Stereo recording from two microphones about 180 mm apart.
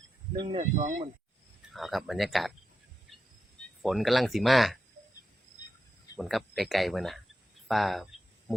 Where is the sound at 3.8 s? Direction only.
Centre (ahead or behind).